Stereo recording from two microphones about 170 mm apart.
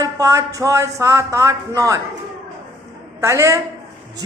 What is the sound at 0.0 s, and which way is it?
A man's voice, 20° right (ahead or behind).